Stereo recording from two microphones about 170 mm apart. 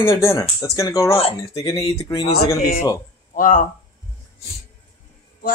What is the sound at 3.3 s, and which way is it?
Speech, 55° left (ahead or behind).